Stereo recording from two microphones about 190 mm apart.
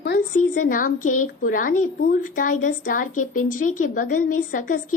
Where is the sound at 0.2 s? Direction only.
45° left (ahead or behind).